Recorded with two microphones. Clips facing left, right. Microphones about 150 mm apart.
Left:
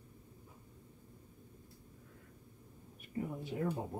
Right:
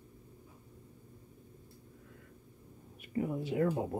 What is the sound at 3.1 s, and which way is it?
Speech, 90° right.